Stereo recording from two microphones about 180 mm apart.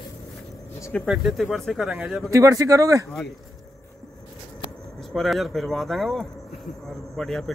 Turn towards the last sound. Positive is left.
turn(degrees=0)  # may be behind; listen again after turning